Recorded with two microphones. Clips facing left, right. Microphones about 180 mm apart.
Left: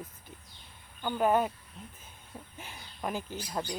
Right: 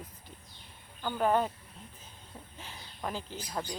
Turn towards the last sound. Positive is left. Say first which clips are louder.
# left 2 dB
turn(degrees=15)  # may be behind; listen again after turning